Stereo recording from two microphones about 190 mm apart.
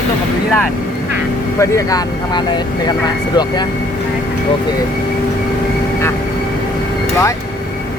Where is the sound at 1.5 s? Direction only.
15° left (ahead or behind).